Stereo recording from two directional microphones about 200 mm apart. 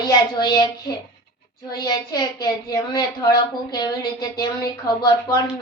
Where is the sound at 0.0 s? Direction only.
20° left (ahead or behind).